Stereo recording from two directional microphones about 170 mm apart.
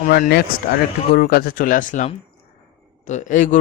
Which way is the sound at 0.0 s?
55° left (ahead or behind).